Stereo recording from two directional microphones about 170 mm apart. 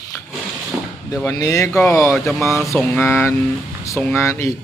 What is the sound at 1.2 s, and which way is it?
Speech, 20° left (ahead or behind).